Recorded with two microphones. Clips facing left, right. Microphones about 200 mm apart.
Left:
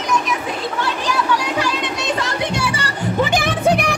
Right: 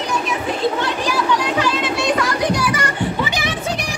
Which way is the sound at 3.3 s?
50° left (ahead or behind).